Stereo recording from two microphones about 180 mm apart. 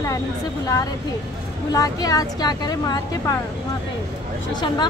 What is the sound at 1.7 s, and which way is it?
Speech, 20° left (ahead or behind).